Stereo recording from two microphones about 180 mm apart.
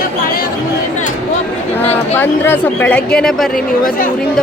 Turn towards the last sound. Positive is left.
turn(degrees=50)  # may be behind; listen again after turning